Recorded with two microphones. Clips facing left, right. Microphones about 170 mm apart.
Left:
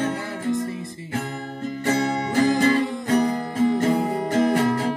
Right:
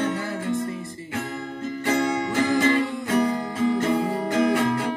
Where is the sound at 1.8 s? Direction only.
35° left (ahead or behind).